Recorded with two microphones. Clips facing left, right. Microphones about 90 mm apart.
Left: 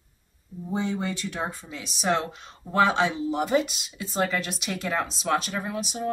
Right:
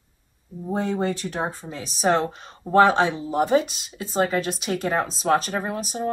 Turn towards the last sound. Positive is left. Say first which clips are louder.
# right 3 dB
turn(degrees=-40)  # may be behind; listen again after turning